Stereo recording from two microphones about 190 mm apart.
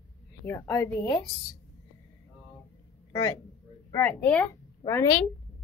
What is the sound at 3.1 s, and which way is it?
A man's voice, 15° left (ahead or behind).